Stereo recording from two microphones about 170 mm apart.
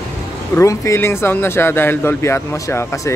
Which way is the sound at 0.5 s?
15° left (ahead or behind).